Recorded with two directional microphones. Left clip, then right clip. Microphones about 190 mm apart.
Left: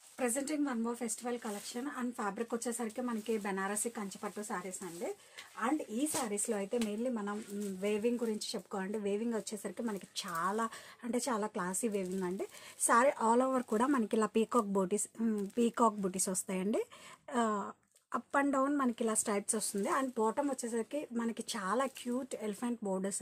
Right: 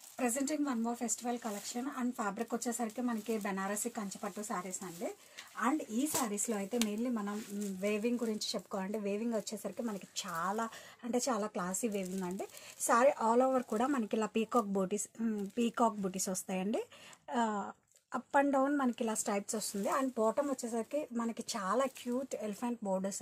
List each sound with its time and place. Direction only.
0.2 s speech: 30° left (ahead or behind)
6.2 s speech: 15° left (ahead or behind)